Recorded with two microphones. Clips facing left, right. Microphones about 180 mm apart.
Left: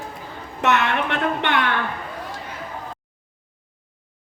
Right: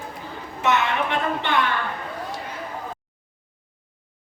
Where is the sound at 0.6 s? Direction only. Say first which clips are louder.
Left 1 dB; 70° left (ahead or behind).